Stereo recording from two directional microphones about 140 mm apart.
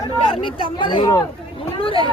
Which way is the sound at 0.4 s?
35° left (ahead or behind).